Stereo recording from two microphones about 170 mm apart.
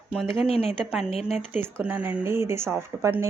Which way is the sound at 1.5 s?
10° right (ahead or behind).